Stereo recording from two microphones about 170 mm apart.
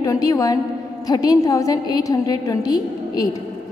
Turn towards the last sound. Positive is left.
turn(degrees=25)  # may be behind; listen again after turning